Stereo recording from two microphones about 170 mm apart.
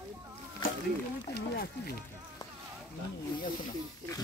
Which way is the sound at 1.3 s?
70° left (ahead or behind).